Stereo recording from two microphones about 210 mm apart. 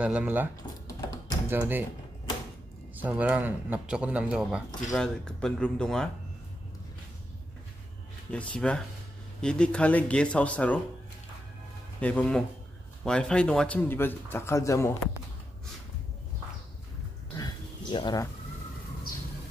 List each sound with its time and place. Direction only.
0.0 s a man's voice: 5° right (ahead or behind)
1.5 s speech: 10° right (ahead or behind)
3.0 s a man's voice: 5° right (ahead or behind)
8.3 s a man's voice: 5° left (ahead or behind)
12.0 s a man's voice: 5° left (ahead or behind)
17.4 s a sound: 20° left (ahead or behind)